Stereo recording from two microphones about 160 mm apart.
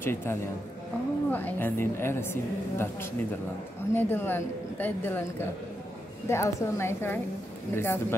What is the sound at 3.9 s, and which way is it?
Speech, 10° left (ahead or behind).